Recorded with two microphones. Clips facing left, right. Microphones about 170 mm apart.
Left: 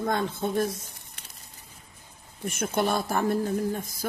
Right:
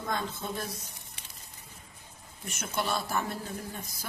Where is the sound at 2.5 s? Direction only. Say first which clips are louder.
Left 7 dB; 50° left (ahead or behind).